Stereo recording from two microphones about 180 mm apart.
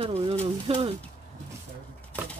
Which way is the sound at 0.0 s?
30° right (ahead or behind).